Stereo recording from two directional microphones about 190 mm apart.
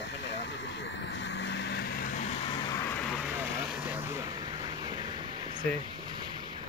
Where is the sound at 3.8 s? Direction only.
10° right (ahead or behind).